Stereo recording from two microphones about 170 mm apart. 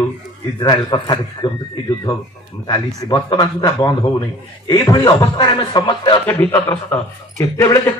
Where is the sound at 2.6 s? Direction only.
25° left (ahead or behind).